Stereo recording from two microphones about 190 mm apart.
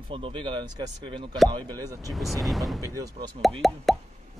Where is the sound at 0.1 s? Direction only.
25° right (ahead or behind).